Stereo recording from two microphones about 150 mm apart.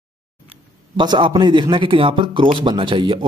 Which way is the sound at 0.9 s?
30° right (ahead or behind).